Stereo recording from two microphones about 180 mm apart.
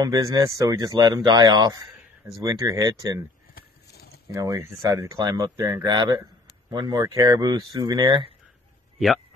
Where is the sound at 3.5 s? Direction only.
60° left (ahead or behind).